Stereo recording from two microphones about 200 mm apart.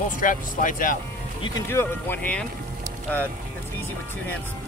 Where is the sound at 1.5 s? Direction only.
10° left (ahead or behind).